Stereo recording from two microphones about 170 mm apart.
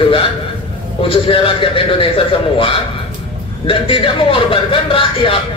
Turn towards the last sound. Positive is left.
turn(degrees=30)  # may be behind; listen again after turning